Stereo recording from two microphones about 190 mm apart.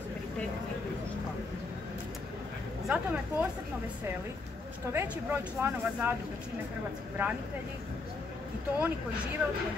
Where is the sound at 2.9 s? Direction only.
5° right (ahead or behind).